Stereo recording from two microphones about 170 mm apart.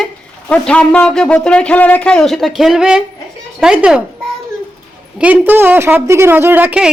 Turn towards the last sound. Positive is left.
turn(degrees=-5)  # may be behind; listen again after turning